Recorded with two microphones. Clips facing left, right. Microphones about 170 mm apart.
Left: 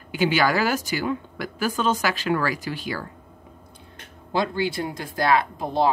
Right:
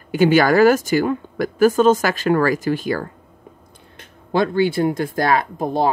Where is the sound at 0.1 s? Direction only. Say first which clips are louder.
Right 7 dB; 50° right (ahead or behind).